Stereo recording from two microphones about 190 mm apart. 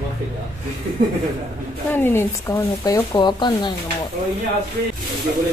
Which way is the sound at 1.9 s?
10° left (ahead or behind).